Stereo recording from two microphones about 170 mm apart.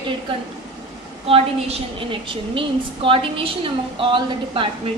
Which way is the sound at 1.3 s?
35° right (ahead or behind).